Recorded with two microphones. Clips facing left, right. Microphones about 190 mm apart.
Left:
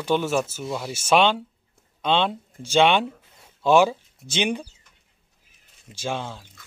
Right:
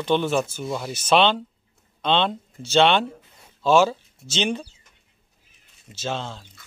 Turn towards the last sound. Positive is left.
turn(degrees=10)  # may be behind; listen again after turning